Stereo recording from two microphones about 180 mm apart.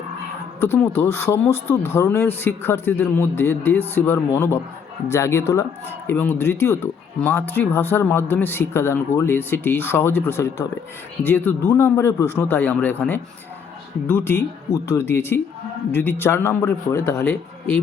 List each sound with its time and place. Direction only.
0.6 s speech: 15° left (ahead or behind)